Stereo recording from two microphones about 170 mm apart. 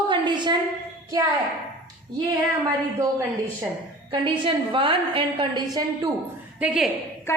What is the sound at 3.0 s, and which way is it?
Speech, 20° right (ahead or behind).